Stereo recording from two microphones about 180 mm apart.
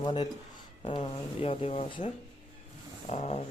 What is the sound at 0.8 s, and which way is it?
Speech, 30° left (ahead or behind).